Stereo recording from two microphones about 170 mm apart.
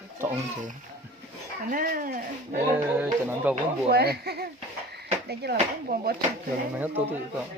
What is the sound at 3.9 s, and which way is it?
A woman's voice, 70° right (ahead or behind).